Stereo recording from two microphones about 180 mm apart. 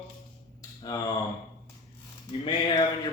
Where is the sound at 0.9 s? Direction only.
20° left (ahead or behind).